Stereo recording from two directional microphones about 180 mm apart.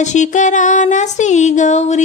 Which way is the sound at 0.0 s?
40° left (ahead or behind).